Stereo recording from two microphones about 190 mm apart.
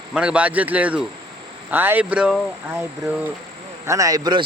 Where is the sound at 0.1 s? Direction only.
5° right (ahead or behind).